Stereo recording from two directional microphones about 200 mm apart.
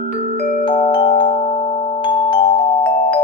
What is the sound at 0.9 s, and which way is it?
Music, 25° left (ahead or behind).